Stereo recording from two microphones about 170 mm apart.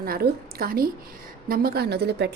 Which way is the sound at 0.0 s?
60° right (ahead or behind).